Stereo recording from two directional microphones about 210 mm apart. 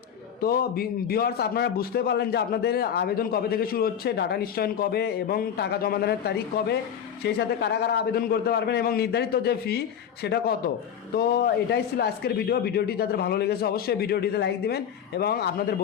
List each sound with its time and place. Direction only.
0.4 s a man's voice: 45° left (ahead or behind)